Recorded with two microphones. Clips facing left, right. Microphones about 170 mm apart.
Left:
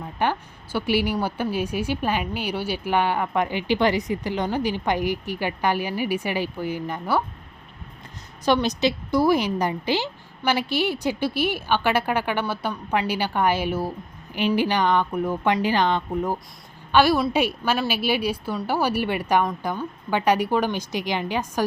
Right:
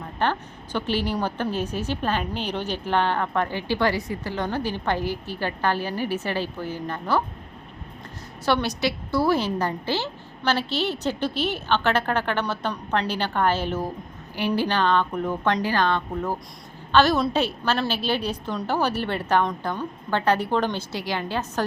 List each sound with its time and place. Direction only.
0.2 s speech: 10° left (ahead or behind)
8.4 s speech: 20° left (ahead or behind)